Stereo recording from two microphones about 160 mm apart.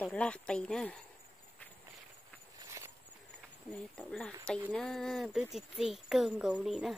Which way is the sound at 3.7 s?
5° left (ahead or behind).